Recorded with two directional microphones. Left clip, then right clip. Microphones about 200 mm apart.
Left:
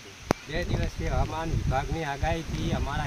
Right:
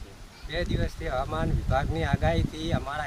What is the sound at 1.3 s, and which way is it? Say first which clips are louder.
Speech: right 2 dB; 10° right (ahead or behind).